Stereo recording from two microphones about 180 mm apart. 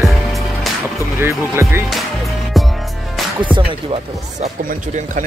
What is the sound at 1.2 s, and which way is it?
Speech, 15° right (ahead or behind).